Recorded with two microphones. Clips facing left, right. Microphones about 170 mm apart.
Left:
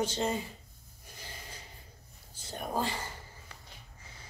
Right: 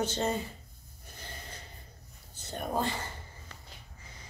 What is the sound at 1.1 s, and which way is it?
Snort, 10° left (ahead or behind).